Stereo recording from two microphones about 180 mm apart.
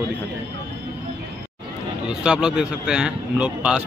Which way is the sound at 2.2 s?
5° right (ahead or behind).